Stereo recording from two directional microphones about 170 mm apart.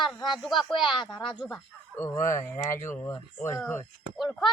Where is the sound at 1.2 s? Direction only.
30° left (ahead or behind).